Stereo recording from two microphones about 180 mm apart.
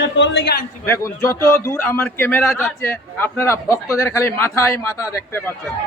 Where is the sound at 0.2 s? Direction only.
65° left (ahead or behind).